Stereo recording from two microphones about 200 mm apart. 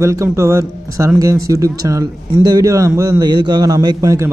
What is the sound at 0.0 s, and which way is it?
Speech, 15° right (ahead or behind).